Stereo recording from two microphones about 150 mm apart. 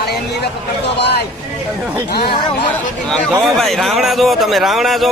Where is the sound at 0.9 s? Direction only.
90° left.